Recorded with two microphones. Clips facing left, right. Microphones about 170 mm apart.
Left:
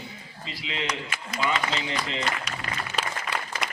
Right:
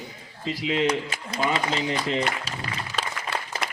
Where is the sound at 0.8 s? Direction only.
30° right (ahead or behind).